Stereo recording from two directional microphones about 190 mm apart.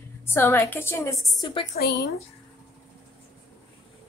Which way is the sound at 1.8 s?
65° left (ahead or behind).